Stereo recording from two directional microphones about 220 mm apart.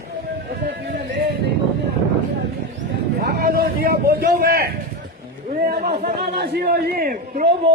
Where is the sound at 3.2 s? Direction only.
45° right (ahead or behind).